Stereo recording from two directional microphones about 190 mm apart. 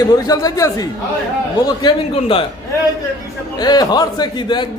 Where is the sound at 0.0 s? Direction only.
20° left (ahead or behind).